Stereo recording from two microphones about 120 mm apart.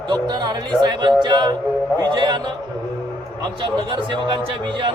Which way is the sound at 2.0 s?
40° right (ahead or behind).